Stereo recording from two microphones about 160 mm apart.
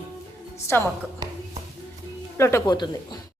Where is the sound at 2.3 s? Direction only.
15° left (ahead or behind).